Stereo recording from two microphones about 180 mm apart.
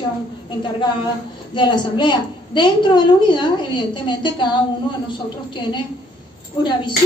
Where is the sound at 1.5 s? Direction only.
25° left (ahead or behind).